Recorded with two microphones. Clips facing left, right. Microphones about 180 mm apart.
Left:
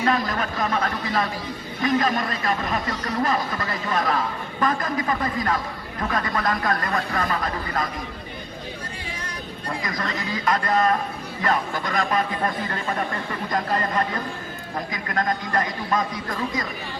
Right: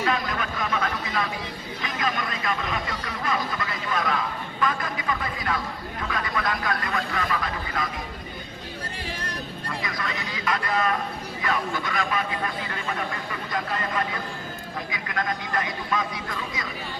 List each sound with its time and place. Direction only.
0.0 s a sound: 40° left (ahead or behind)
1.8 s a man's voice: 45° left (ahead or behind)
9.8 s a man's voice: 45° left (ahead or behind)